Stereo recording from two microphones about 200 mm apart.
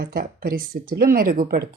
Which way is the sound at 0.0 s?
45° right (ahead or behind).